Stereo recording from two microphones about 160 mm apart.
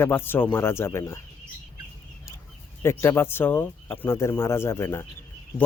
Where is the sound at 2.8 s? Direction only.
15° left (ahead or behind).